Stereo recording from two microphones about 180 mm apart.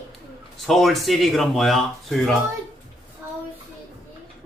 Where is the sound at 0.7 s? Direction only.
Centre (ahead or behind).